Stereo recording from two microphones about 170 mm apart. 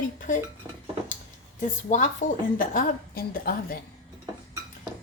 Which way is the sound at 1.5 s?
45° left (ahead or behind).